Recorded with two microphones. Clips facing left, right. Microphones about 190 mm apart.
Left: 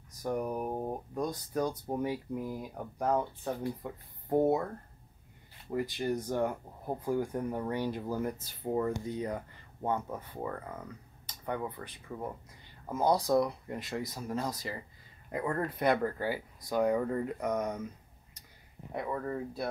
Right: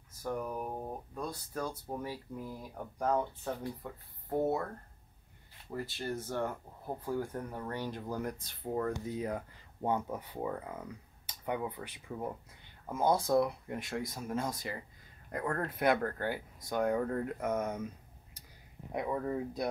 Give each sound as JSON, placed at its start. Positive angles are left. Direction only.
{"t": 0.1, "sound": "a sound", "side_deg": 15}
{"t": 1.5, "sound": "speech", "side_deg": 15}
{"t": 5.7, "sound": "speech", "side_deg": 15}
{"t": 9.0, "sound": "speech", "side_deg": -5}
{"t": 18.9, "sound": "speech", "side_deg": -15}